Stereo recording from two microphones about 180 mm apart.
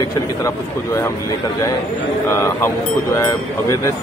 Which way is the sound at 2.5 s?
15° left (ahead or behind).